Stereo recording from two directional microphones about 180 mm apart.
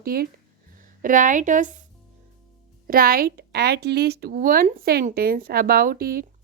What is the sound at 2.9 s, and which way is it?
A woman's voice, 55° right (ahead or behind).